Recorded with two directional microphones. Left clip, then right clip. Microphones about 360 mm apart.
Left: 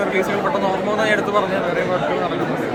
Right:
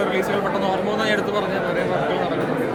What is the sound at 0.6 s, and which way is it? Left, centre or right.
Speech, centre.